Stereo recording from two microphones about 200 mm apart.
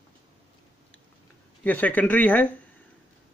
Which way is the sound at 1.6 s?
10° left (ahead or behind).